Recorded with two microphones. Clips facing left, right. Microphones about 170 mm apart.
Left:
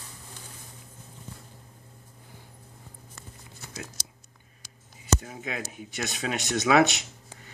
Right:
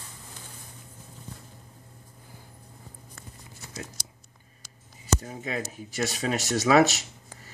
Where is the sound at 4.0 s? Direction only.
25° left (ahead or behind).